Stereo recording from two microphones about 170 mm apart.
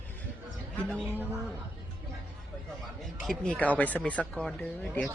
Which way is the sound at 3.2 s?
5° left (ahead or behind).